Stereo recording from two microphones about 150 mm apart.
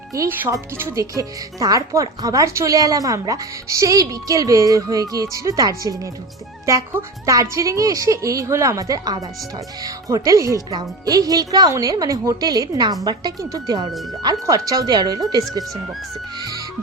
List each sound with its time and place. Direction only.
0.1 s speech: 20° right (ahead or behind)
16.4 s music: 25° right (ahead or behind)